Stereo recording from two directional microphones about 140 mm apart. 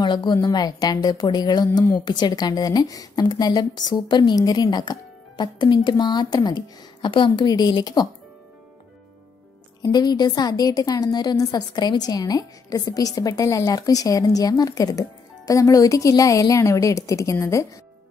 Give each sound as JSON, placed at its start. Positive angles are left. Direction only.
{"t": 0.0, "sound": "a woman's voice", "side_deg": 35}
{"t": 9.8, "sound": "a woman's voice", "side_deg": 30}